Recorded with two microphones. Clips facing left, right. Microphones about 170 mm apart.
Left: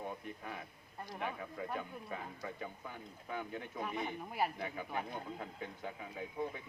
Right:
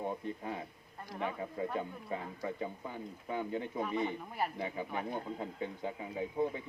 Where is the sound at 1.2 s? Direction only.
30° right (ahead or behind).